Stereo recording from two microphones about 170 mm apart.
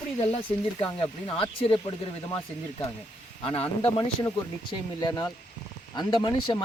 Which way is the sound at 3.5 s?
35° left (ahead or behind).